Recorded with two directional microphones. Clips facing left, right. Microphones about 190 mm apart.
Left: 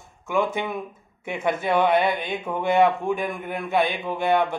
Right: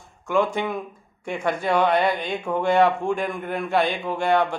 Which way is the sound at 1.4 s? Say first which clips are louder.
Even; 20° left (ahead or behind).